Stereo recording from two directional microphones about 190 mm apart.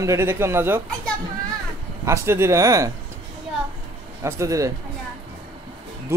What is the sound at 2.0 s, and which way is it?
Speech, 15° right (ahead or behind).